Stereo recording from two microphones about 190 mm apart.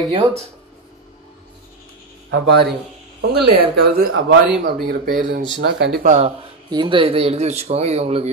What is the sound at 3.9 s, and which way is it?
Speech, 50° right (ahead or behind).